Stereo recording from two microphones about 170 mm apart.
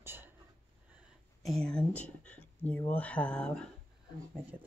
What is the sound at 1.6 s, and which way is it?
Speech, 5° left (ahead or behind).